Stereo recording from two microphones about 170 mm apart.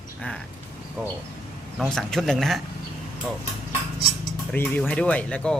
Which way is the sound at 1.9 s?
5° left (ahead or behind).